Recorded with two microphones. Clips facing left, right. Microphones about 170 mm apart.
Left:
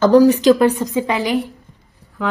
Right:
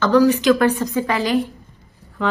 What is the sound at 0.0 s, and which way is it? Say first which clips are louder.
Speech: left 4 dB; 40° left (ahead or behind).